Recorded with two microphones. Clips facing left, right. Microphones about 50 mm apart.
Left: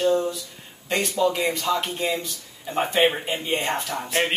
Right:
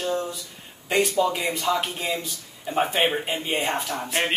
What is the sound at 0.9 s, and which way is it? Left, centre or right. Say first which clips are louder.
Speech: right 1 dB; centre.